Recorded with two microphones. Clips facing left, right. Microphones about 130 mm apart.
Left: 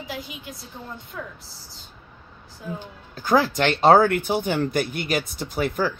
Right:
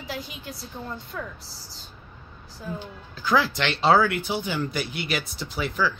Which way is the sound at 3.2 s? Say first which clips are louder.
Left 3 dB; 45° left (ahead or behind).